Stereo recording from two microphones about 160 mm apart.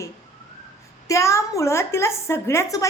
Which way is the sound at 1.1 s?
20° left (ahead or behind).